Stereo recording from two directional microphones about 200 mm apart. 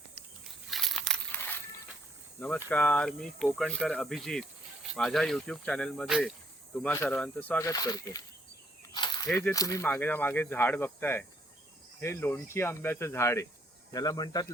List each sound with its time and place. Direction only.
0.7 s crushing: centre (ahead or behind)
2.6 s speech: 5° left (ahead or behind)
8.9 s a sound: 25° left (ahead or behind)
9.2 s speech: 10° left (ahead or behind)